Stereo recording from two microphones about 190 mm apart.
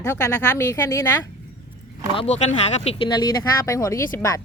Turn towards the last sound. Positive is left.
turn(degrees=15)  # may be behind; listen again after turning